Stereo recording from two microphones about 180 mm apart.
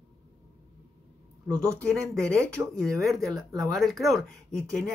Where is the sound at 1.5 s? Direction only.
15° right (ahead or behind).